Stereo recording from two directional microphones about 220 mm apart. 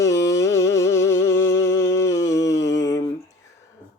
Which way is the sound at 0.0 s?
15° left (ahead or behind).